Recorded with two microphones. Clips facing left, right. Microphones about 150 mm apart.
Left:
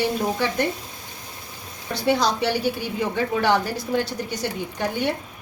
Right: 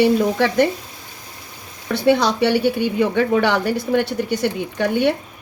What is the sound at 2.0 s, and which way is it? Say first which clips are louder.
A woman's voice: right 5 dB; 60° right (ahead or behind).